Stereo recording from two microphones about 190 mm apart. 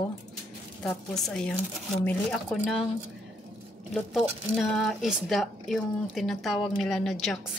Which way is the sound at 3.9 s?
Centre (ahead or behind).